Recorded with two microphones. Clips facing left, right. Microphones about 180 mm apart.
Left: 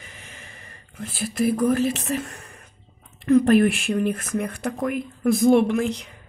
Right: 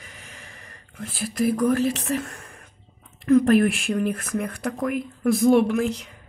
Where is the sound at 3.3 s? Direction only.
Centre (ahead or behind).